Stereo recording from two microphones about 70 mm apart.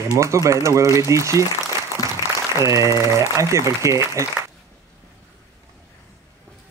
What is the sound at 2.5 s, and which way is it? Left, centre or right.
Speech, right.